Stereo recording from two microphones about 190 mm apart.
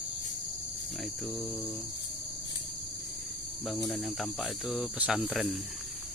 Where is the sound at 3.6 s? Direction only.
Centre (ahead or behind).